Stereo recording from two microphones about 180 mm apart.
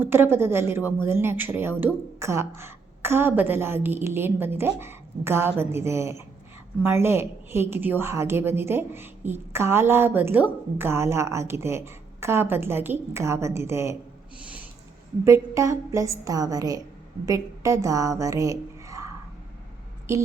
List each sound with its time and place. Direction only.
0.0 s a woman's voice: 10° right (ahead or behind)
15.2 s a woman's voice: 15° right (ahead or behind)